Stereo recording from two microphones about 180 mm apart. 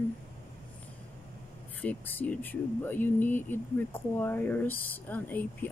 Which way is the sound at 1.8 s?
10° left (ahead or behind).